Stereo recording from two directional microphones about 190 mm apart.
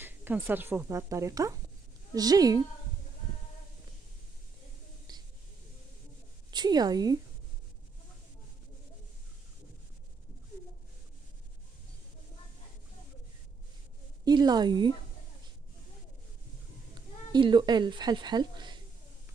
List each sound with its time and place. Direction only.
0.0 s a woman's voice: 10° right (ahead or behind)
6.5 s a woman's voice: 20° right (ahead or behind)
14.2 s a woman's voice: 20° right (ahead or behind)
16.9 s speech: 25° right (ahead or behind)